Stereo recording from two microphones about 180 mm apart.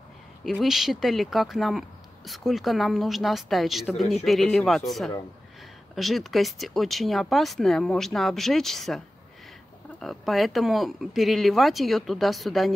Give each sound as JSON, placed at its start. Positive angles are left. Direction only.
{"t": 0.4, "sound": "speech", "side_deg": 0}
{"t": 10.0, "sound": "speech", "side_deg": 0}